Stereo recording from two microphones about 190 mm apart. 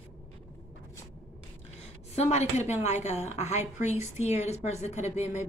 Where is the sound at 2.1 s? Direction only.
35° left (ahead or behind).